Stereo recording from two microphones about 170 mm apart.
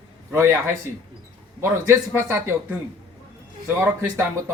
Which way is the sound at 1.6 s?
15° right (ahead or behind).